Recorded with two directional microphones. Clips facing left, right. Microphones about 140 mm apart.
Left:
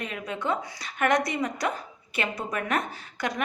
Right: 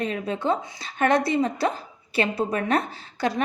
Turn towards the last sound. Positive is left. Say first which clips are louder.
# right 5 dB
turn(degrees=-30)  # may be behind; listen again after turning